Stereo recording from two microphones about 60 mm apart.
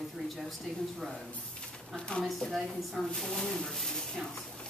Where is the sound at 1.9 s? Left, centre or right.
Centre.